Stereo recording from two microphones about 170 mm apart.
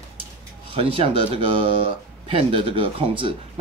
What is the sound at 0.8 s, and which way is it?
Speech, 35° right (ahead or behind).